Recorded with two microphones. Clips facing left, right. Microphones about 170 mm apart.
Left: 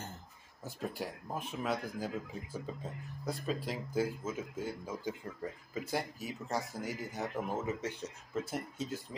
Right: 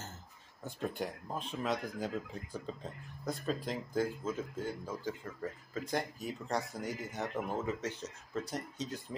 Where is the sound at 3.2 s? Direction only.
Centre (ahead or behind).